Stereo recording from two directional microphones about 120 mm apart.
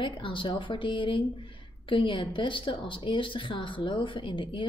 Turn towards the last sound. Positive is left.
turn(degrees=45)  # may be behind; listen again after turning